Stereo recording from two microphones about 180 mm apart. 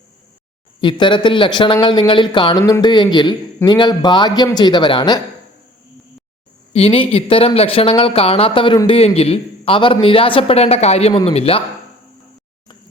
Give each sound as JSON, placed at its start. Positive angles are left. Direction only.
{"t": 0.8, "sound": "a man's voice", "side_deg": 25}
{"t": 6.7, "sound": "speech", "side_deg": 30}